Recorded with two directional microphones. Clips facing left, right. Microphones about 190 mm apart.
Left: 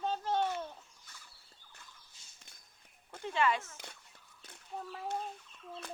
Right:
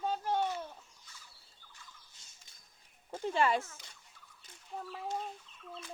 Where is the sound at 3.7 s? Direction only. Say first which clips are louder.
Left 6 dB; 60° left (ahead or behind).